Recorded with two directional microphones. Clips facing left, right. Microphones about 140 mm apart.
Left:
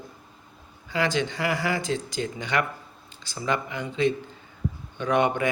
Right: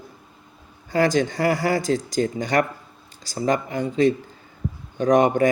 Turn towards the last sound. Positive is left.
turn(degrees=-40)  # may be behind; listen again after turning